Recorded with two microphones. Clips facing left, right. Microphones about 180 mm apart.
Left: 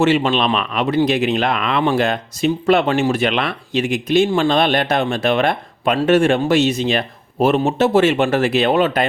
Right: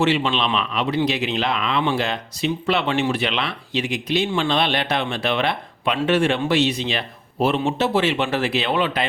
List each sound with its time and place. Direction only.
0.0 s speech: 45° left (ahead or behind)